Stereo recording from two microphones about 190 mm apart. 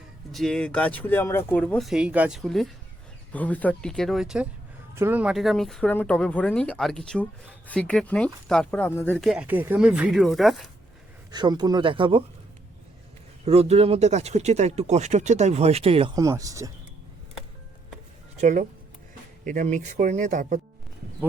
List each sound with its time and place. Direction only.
0.3 s speech: centre (ahead or behind)
9.2 s speech: 5° right (ahead or behind)
11.3 s speech: 20° right (ahead or behind)
13.4 s speech: 35° right (ahead or behind)
16.1 s speech: 20° right (ahead or behind)
18.3 s speech: 40° right (ahead or behind)